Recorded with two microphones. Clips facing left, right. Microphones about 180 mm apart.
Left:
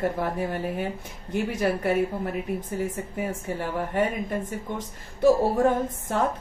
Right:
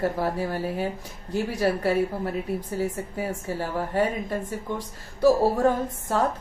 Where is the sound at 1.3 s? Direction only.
20° left (ahead or behind).